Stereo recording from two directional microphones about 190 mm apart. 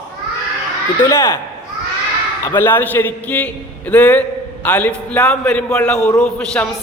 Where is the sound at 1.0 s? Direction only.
15° left (ahead or behind).